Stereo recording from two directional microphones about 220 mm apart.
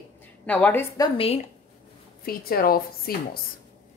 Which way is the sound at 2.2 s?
40° left (ahead or behind).